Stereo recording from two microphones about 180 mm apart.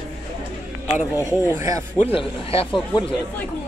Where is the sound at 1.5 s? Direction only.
15° right (ahead or behind).